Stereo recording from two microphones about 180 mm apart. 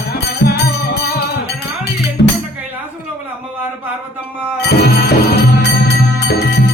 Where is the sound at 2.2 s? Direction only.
65° left (ahead or behind).